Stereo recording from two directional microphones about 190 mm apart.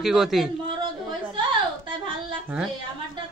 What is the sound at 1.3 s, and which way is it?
Speech, 25° right (ahead or behind).